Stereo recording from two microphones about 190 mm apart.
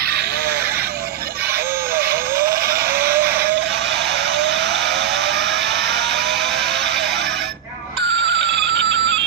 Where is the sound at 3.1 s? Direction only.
10° right (ahead or behind).